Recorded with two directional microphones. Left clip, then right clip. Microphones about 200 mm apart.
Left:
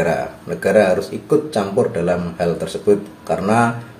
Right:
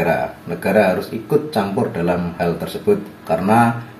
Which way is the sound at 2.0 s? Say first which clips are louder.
Left 1 dB; 5° left (ahead or behind).